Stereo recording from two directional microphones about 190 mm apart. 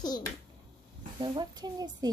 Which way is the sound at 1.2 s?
25° right (ahead or behind).